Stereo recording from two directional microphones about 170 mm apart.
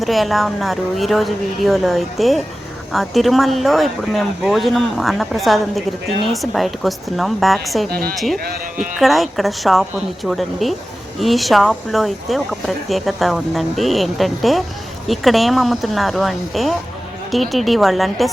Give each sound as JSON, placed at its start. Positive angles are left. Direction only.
{"t": 0.0, "sound": "speech", "side_deg": 0}
{"t": 7.9, "sound": "speech", "side_deg": -65}
{"t": 8.1, "sound": "speech", "side_deg": 0}